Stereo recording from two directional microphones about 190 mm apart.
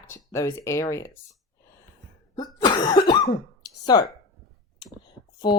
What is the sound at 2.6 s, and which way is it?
Speech, 20° left (ahead or behind).